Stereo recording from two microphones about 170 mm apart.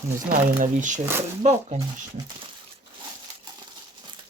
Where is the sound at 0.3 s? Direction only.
50° right (ahead or behind).